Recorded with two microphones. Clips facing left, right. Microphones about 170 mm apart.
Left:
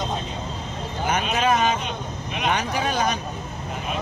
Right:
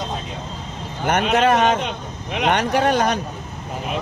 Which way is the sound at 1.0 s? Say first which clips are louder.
Right 5 dB; 70° right (ahead or behind).